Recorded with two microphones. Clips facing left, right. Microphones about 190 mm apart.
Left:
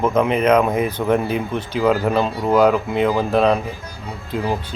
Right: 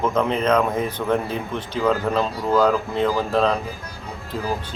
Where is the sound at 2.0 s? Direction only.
25° left (ahead or behind).